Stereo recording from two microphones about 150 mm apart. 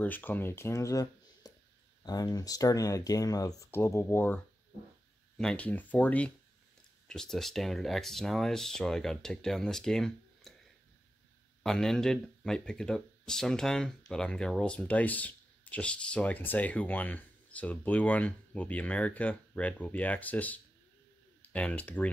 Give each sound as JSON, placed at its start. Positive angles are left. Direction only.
{"t": 0.0, "sound": "speech", "side_deg": 10}
{"t": 5.4, "sound": "speech", "side_deg": 5}
{"t": 11.6, "sound": "speech", "side_deg": 5}